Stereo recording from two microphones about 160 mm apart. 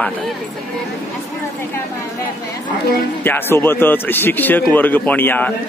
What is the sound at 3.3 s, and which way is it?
A man's voice, 15° left (ahead or behind).